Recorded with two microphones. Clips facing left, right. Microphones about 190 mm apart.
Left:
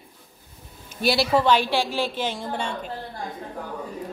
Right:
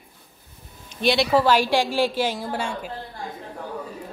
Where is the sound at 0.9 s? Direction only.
5° left (ahead or behind).